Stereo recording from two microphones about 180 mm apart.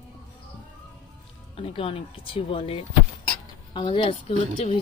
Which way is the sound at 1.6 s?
30° left (ahead or behind).